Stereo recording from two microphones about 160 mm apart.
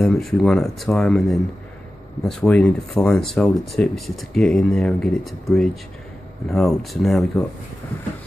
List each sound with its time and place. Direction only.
0.0 s speech: 5° left (ahead or behind)